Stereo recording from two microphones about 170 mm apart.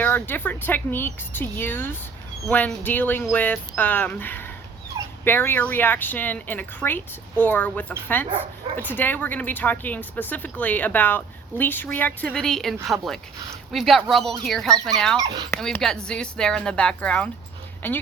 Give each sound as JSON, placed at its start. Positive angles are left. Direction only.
{"t": 0.0, "sound": "speech", "side_deg": 10}
{"t": 15.2, "sound": "speech", "side_deg": -25}
{"t": 15.6, "sound": "speech", "side_deg": 5}